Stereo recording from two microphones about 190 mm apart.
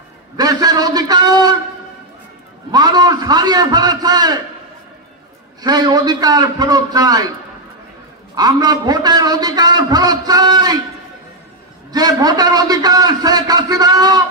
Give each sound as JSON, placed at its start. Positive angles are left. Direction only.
{"t": 0.4, "sound": "a man's voice", "side_deg": -20}
{"t": 2.7, "sound": "a man's voice", "side_deg": -20}
{"t": 5.6, "sound": "a man's voice", "side_deg": -20}
{"t": 8.4, "sound": "a man's voice", "side_deg": -20}
{"t": 11.9, "sound": "a man's voice", "side_deg": -20}